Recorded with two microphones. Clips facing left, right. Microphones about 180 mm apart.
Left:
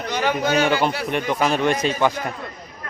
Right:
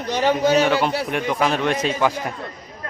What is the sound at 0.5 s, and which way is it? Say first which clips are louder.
A man's voice: right 2 dB; centre (ahead or behind).